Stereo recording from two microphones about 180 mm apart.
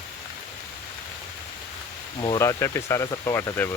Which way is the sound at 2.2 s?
20° left (ahead or behind).